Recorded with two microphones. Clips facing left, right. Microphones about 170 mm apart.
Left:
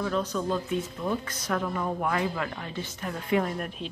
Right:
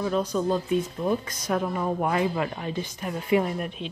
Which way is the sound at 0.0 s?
15° right (ahead or behind).